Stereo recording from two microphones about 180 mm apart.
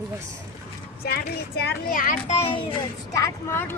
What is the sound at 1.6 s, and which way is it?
A child's voice, 50° left (ahead or behind).